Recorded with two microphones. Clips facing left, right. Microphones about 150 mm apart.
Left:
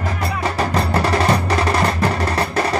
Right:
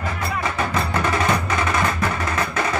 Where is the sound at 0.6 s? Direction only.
35° left (ahead or behind).